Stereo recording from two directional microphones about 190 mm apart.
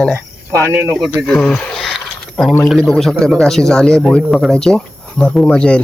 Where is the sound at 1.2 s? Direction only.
5° left (ahead or behind).